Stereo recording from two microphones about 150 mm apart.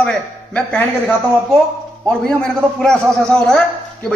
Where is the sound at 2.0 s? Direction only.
5° left (ahead or behind).